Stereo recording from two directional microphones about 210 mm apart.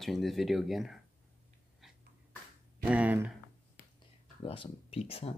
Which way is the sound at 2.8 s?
5° right (ahead or behind).